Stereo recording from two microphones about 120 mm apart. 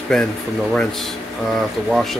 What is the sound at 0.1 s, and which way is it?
Speech, 5° left (ahead or behind).